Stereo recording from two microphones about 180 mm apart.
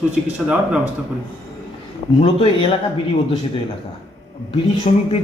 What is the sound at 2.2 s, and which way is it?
Speech, 30° left (ahead or behind).